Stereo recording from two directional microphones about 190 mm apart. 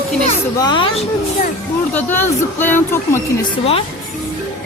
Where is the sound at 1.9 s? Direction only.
10° left (ahead or behind).